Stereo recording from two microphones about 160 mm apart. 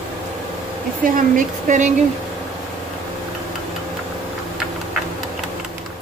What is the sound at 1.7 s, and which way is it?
Speech, 50° right (ahead or behind).